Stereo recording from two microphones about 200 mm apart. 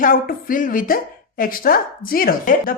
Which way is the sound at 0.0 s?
45° left (ahead or behind).